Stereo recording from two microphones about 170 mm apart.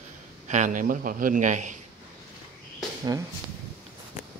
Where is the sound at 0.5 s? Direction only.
45° right (ahead or behind).